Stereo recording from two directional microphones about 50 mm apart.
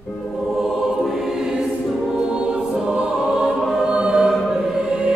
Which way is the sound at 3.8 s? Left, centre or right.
Centre.